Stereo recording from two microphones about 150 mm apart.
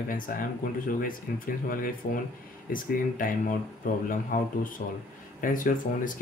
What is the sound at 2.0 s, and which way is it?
Speech, 80° left.